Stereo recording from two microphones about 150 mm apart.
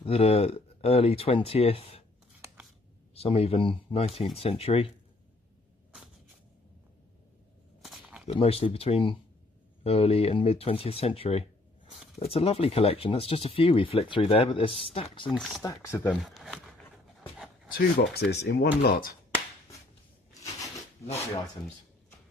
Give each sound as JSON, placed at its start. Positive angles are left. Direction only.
{"t": 0.0, "sound": "speech", "side_deg": 40}
{"t": 3.2, "sound": "speech", "side_deg": 40}
{"t": 7.8, "sound": "a sound", "side_deg": 0}
{"t": 8.3, "sound": "speech", "side_deg": 40}
{"t": 15.2, "sound": "speech", "side_deg": 0}
{"t": 15.6, "sound": "speech", "side_deg": 20}
{"t": 16.2, "sound": "dog", "side_deg": 0}
{"t": 17.6, "sound": "speech", "side_deg": 85}
{"t": 20.3, "sound": "a sound", "side_deg": 20}